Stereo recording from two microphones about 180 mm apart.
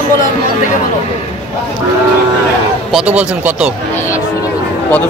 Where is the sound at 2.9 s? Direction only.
5° right (ahead or behind).